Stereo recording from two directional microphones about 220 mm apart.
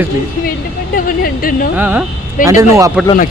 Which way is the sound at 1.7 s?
10° right (ahead or behind).